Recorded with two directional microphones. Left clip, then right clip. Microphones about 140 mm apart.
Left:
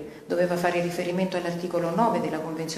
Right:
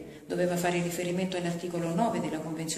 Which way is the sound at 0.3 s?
15° right (ahead or behind).